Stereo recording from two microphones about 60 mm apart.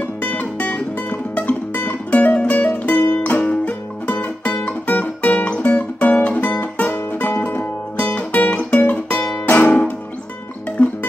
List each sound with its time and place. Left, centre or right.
0.2 s music: left